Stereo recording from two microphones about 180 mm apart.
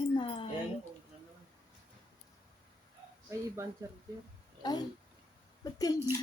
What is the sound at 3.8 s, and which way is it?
Speech, 15° right (ahead or behind).